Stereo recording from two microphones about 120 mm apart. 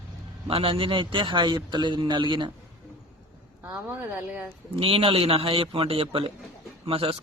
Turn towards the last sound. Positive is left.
turn(degrees=-50)  # may be behind; listen again after turning